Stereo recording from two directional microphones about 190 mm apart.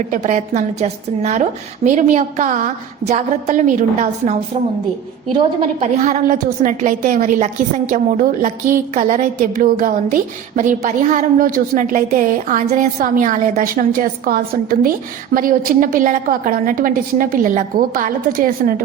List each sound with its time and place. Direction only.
0.1 s a woman's voice: 40° right (ahead or behind)
5.8 s a woman's voice: 35° right (ahead or behind)